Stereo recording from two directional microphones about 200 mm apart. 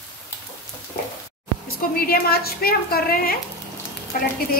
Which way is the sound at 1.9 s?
50° left (ahead or behind).